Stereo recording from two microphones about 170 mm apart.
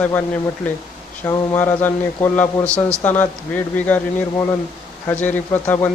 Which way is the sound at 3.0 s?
10° left (ahead or behind).